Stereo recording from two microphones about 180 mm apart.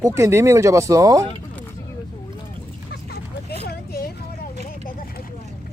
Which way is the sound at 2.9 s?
60° left (ahead or behind).